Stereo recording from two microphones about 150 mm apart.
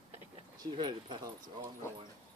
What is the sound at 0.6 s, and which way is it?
Speech, 30° right (ahead or behind).